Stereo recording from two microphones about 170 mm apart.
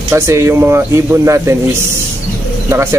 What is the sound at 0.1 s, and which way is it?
Speech, 15° right (ahead or behind).